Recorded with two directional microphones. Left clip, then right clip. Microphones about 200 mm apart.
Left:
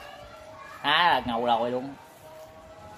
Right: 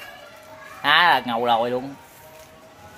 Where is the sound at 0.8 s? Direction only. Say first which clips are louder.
Right 6 dB; 30° right (ahead or behind).